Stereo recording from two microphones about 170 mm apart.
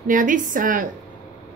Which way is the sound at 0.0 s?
50° right (ahead or behind).